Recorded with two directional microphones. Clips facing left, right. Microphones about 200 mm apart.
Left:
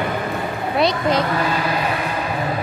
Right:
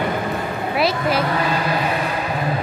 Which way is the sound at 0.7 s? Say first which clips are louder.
Left 2 dB; 5° right (ahead or behind).